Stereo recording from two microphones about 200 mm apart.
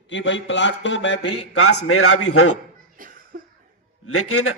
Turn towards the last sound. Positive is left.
turn(degrees=90)